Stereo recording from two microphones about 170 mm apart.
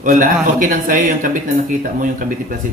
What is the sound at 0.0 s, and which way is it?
Speech, 50° right (ahead or behind).